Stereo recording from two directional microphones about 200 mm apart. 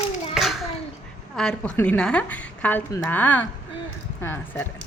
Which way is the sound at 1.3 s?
5° left (ahead or behind).